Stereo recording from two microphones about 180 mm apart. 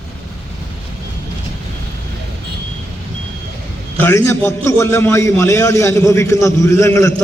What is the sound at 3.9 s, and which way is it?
A man's voice, 15° left (ahead or behind).